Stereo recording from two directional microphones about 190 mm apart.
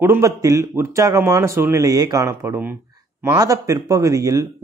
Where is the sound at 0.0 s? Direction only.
15° right (ahead or behind).